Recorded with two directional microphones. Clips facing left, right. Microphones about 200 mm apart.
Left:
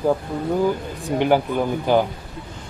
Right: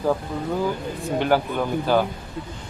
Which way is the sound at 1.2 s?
15° left (ahead or behind).